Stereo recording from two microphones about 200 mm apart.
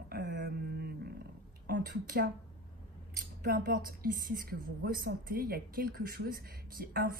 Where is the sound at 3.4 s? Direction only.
45° right (ahead or behind).